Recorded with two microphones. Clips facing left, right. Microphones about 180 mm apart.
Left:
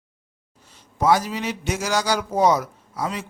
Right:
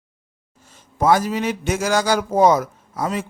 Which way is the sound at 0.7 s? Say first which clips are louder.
Right 2 dB; 50° right (ahead or behind).